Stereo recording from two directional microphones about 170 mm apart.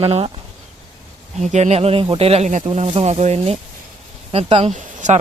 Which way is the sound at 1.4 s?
40° right (ahead or behind).